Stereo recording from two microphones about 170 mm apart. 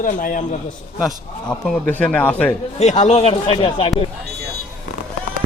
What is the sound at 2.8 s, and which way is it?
Speech, 40° left (ahead or behind).